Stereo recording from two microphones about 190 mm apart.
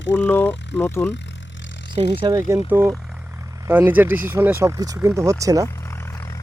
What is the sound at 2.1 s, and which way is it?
Speech, 25° right (ahead or behind).